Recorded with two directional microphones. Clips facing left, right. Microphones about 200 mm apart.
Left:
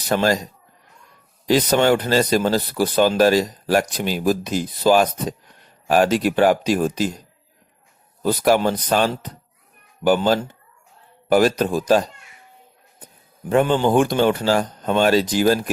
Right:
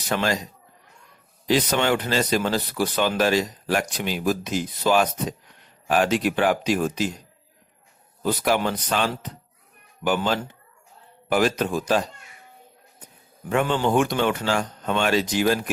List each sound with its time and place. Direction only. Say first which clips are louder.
0.1 s speech: left 5 dB; 40° left (ahead or behind)
1.5 s speech: left 5 dB; 40° left (ahead or behind)
8.2 s speech: left 5 dB; 40° left (ahead or behind)
11.3 s speech: left 5 dB; 40° left (ahead or behind)
13.5 s speech: left 5 dB; 35° left (ahead or behind)